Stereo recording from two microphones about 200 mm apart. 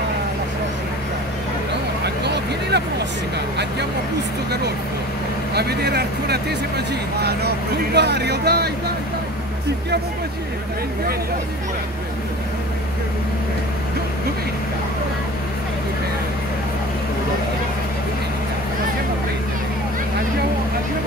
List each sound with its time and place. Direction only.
2.2 s vehicle: 55° right (ahead or behind)
5.5 s speech: 55° right (ahead or behind)